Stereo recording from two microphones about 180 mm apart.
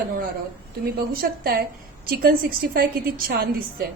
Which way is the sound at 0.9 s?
60° right (ahead or behind).